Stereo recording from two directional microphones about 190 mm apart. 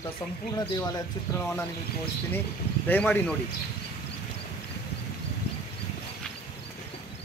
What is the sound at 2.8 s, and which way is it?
Speech, 10° left (ahead or behind).